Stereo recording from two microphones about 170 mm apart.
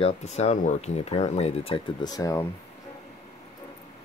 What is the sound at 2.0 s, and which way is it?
Speech, 20° left (ahead or behind).